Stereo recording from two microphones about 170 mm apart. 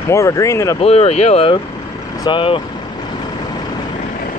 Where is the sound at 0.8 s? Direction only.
35° left (ahead or behind).